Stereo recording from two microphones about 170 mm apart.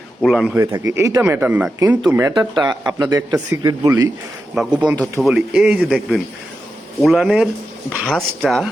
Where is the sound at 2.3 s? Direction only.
25° right (ahead or behind).